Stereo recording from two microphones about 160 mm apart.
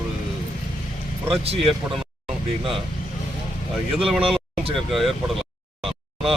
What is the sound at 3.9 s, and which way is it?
Speech, centre (ahead or behind).